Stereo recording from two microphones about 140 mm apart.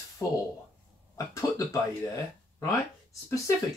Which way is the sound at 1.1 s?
20° left (ahead or behind).